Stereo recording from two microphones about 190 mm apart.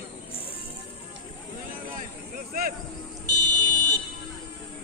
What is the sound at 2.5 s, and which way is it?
Speech, 50° right (ahead or behind).